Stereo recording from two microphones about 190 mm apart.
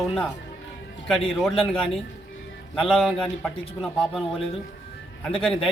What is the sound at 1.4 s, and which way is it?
Speech, centre (ahead or behind).